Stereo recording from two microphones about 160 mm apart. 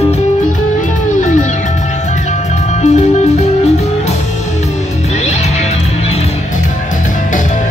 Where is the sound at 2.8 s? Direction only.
45° left (ahead or behind).